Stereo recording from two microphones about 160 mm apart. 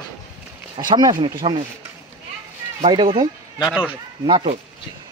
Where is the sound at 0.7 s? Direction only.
30° right (ahead or behind).